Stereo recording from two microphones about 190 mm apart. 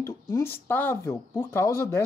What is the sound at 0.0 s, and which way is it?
Speech, 15° left (ahead or behind).